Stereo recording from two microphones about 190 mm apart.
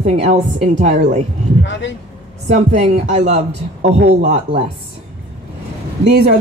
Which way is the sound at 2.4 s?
35° right (ahead or behind).